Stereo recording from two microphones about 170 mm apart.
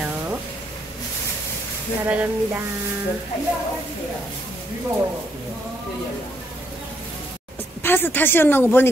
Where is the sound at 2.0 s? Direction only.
10° right (ahead or behind).